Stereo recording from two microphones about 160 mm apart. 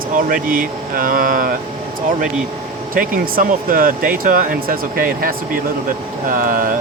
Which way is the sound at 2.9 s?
60° right (ahead or behind).